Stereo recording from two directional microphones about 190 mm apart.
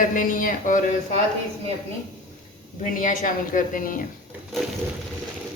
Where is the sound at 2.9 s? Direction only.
45° left (ahead or behind).